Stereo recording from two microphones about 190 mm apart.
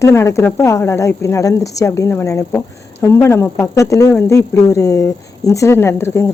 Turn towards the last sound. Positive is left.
turn(degrees=15)  # may be behind; listen again after turning